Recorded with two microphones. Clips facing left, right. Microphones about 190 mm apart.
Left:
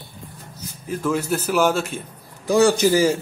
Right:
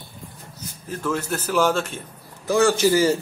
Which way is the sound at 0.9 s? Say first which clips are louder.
Left 3 dB; 10° left (ahead or behind).